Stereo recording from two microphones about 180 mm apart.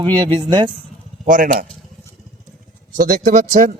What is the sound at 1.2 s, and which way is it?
Speech, 50° right (ahead or behind).